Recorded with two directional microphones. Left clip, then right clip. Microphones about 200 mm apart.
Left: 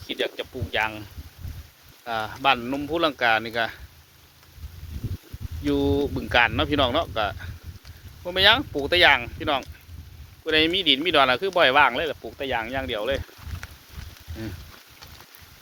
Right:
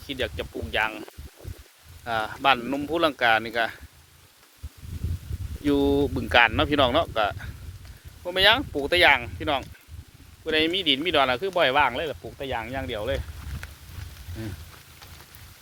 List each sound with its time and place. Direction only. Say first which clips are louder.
0.1 s speech: left 2 dB; 10° right (ahead or behind)
2.0 s speech: even; 15° right (ahead or behind)
5.6 s speech: right 1 dB; 20° right (ahead or behind); by 13.7 s 10° left (ahead or behind)